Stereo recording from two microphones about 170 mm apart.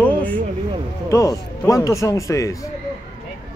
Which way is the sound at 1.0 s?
20° left (ahead or behind).